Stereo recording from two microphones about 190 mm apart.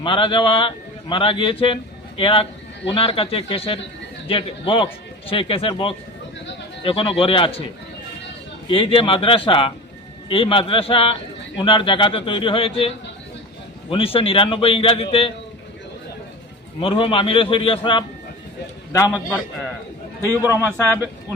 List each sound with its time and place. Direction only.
0.0 s a man's voice: 25° left (ahead or behind)
8.6 s a man's voice: 25° left (ahead or behind)
13.9 s a man's voice: 30° left (ahead or behind)
16.8 s a man's voice: 30° left (ahead or behind)
20.4 s speech: 10° right (ahead or behind)